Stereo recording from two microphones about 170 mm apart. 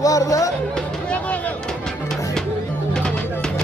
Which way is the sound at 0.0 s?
20° left (ahead or behind).